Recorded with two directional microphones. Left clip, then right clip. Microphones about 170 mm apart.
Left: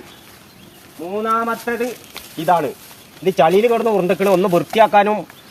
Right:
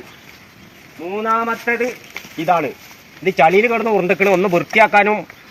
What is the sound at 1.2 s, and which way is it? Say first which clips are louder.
Speech: right 2 dB; 15° left (ahead or behind).